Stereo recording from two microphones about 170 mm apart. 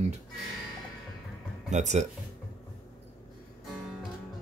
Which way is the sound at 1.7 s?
45° right (ahead or behind).